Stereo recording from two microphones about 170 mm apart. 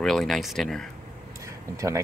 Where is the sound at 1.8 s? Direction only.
20° right (ahead or behind).